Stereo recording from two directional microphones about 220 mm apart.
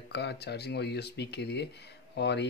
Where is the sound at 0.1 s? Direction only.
50° left (ahead or behind).